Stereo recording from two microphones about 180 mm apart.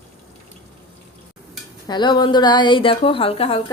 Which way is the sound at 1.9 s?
25° left (ahead or behind).